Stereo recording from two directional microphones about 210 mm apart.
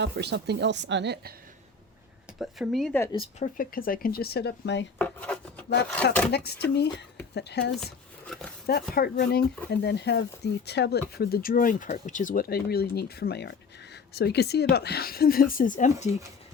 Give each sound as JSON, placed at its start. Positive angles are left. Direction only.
{"t": 0.0, "sound": "a woman's voice", "side_deg": -55}
{"t": 2.4, "sound": "speech", "side_deg": 0}
{"t": 3.0, "sound": "speech", "side_deg": 20}
{"t": 3.3, "sound": "speech", "side_deg": 40}
{"t": 4.9, "sound": "chopping", "side_deg": 5}
{"t": 6.3, "sound": "speech", "side_deg": 50}
{"t": 8.3, "sound": "speech", "side_deg": 0}
{"t": 8.6, "sound": "speech", "side_deg": 45}